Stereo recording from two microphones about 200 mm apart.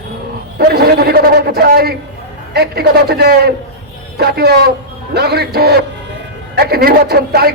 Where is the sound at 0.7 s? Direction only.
50° right (ahead or behind).